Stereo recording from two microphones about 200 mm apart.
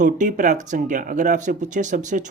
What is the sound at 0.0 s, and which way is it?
Speech, 40° right (ahead or behind).